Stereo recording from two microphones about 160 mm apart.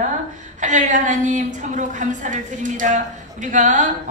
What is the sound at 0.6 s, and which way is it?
A woman's voice, 50° right (ahead or behind).